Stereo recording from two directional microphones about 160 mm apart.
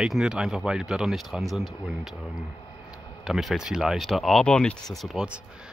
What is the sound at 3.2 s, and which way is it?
Speech, centre (ahead or behind).